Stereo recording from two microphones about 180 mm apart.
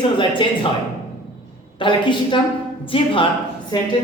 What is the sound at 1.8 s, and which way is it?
A woman's voice, 25° left (ahead or behind).